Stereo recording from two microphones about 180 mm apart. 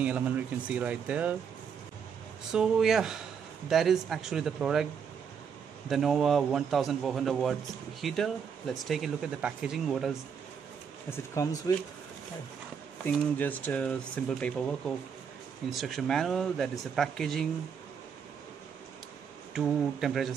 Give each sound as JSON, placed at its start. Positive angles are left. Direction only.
{"t": 0.0, "sound": "speech", "side_deg": -10}
{"t": 2.5, "sound": "speech", "side_deg": -5}
{"t": 5.9, "sound": "speech", "side_deg": 0}
{"t": 11.1, "sound": "speech", "side_deg": 15}
{"t": 13.0, "sound": "speech", "side_deg": 10}
{"t": 19.5, "sound": "speech", "side_deg": 0}